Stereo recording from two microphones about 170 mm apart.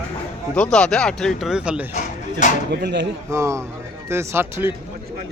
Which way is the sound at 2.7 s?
85° right.